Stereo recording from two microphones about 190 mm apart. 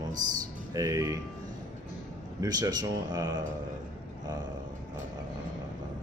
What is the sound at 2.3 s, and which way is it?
Speech, 20° right (ahead or behind).